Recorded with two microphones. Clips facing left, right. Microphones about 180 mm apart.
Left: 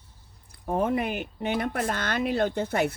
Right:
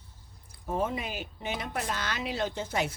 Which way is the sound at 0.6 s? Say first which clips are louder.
Left 6 dB; 60° left (ahead or behind).